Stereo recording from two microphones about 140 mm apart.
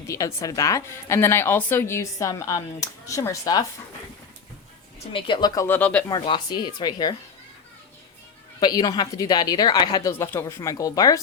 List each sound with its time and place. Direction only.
0.1 s a woman's voice: 20° left (ahead or behind)
5.1 s speech: 35° left (ahead or behind)
5.5 s speech: 15° left (ahead or behind)
6.1 s speech: 35° left (ahead or behind)
8.6 s a woman's voice: 30° left (ahead or behind)